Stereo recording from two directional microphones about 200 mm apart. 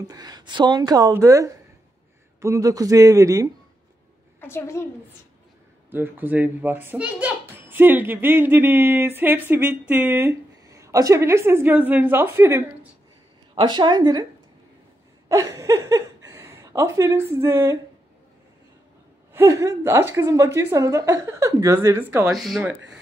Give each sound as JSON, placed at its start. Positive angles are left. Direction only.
{"t": 0.0, "sound": "a child's voice", "side_deg": -20}
{"t": 4.4, "sound": "a woman's voice", "side_deg": 10}
{"t": 5.9, "sound": "a child's voice", "side_deg": -10}
{"t": 15.2, "sound": "a sound", "side_deg": -15}
{"t": 19.3, "sound": "a child's voice", "side_deg": -15}